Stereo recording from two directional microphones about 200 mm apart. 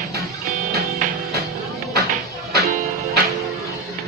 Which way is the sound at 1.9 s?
50° right (ahead or behind).